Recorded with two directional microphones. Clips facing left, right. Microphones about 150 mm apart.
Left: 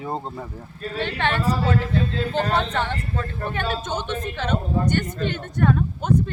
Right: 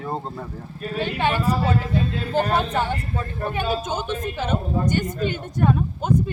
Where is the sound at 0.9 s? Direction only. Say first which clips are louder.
Right 2 dB; 10° right (ahead or behind).